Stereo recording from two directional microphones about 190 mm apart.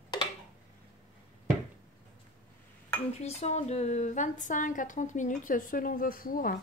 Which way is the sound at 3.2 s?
35° left (ahead or behind).